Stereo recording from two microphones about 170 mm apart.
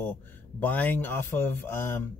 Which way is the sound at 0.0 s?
10° left (ahead or behind).